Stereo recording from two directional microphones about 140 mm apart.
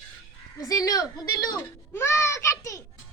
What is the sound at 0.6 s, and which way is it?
Speech, 25° left (ahead or behind).